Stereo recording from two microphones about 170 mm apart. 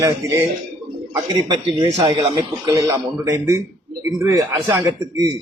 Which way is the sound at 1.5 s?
25° right (ahead or behind).